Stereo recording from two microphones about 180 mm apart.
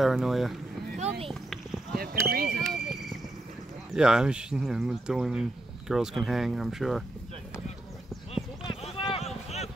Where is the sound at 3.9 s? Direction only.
5° right (ahead or behind).